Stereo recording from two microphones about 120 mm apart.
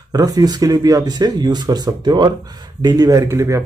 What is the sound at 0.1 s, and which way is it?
A man's voice, 30° right (ahead or behind).